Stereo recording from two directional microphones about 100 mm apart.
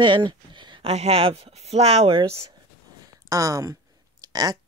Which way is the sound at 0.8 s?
85° right.